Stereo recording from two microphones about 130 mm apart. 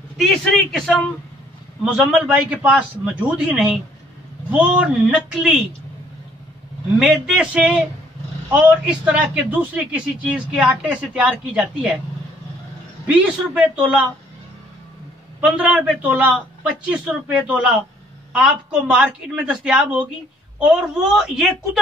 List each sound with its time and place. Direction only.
0.2 s a woman's voice: centre (ahead or behind)
7.0 s a woman's voice: 5° right (ahead or behind)
13.0 s a man's voice: 10° right (ahead or behind)
15.4 s a man's voice: 10° right (ahead or behind)